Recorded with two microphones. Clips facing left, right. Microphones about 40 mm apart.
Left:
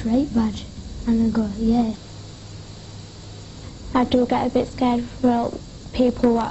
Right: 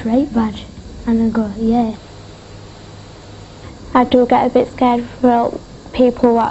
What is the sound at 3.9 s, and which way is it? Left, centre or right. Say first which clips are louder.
A woman's voice: right 7 dB; right.